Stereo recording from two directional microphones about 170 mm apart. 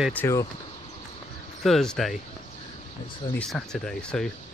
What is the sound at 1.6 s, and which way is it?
Speech, centre (ahead or behind).